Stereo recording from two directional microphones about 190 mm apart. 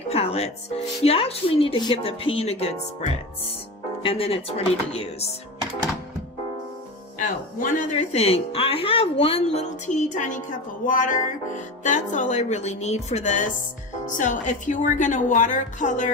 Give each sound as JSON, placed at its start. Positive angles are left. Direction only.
{"t": 0.1, "sound": "speech", "side_deg": 30}
{"t": 4.0, "sound": "speech", "side_deg": 30}
{"t": 7.2, "sound": "speech", "side_deg": 40}